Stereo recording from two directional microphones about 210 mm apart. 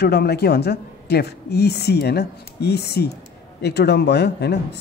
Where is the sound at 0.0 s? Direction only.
50° left (ahead or behind).